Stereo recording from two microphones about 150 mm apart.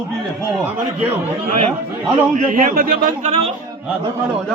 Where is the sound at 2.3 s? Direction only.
55° right (ahead or behind).